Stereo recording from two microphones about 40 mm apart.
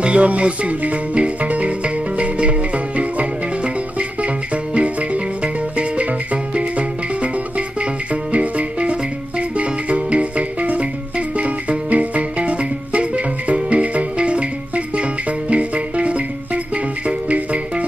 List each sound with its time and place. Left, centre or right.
0.0 s music: right
4.7 s music: right
15.5 s music: right
17.3 s music: right